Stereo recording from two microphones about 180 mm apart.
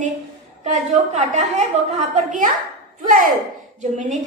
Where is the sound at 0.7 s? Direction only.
40° right (ahead or behind).